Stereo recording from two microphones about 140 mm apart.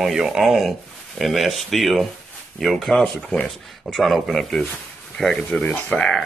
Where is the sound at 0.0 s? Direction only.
Centre (ahead or behind).